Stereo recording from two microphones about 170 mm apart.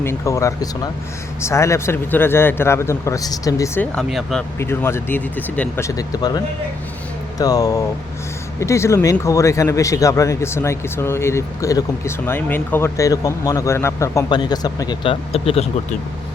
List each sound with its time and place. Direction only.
0.0 s speech: 15° left (ahead or behind)
3.9 s speech: 5° left (ahead or behind)
4.5 s speech: 15° left (ahead or behind); by 15.7 s 35° left (ahead or behind)